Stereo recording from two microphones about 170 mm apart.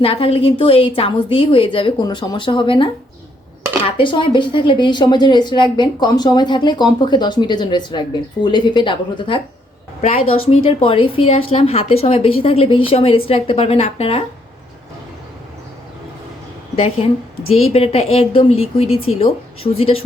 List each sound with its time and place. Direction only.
0.0 s a woman's voice: 35° left (ahead or behind)
10.0 s a woman's voice: 40° left (ahead or behind)
17.5 s a woman's voice: 35° left (ahead or behind)